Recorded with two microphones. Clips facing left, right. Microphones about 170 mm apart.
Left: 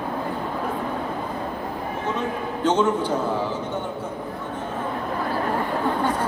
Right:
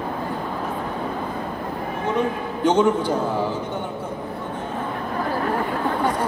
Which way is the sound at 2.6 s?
15° right (ahead or behind).